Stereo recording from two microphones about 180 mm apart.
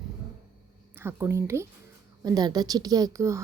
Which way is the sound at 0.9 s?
10° right (ahead or behind).